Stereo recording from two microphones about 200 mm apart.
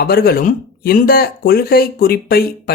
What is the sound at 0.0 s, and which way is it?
Speech, 50° left (ahead or behind).